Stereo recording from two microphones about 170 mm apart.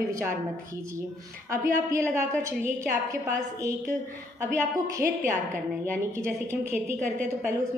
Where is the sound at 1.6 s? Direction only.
15° right (ahead or behind).